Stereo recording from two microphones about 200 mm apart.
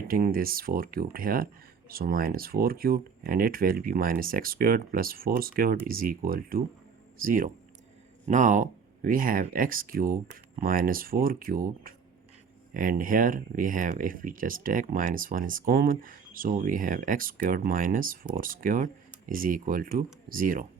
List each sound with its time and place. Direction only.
0.1 s speech: 45° right (ahead or behind)